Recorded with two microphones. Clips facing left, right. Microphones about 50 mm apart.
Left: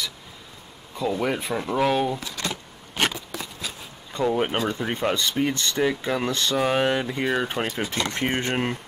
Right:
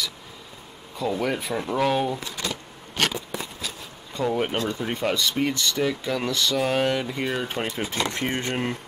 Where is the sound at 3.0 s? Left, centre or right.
Centre.